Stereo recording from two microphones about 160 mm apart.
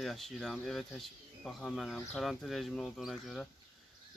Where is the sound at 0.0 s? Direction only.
Centre (ahead or behind).